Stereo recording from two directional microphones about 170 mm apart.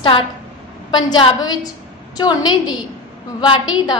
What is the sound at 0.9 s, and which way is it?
A woman's voice, 25° left (ahead or behind).